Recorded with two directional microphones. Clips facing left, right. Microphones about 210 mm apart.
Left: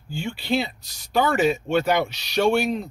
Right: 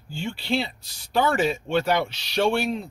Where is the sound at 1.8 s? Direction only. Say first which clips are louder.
Left 2 dB; 5° left (ahead or behind).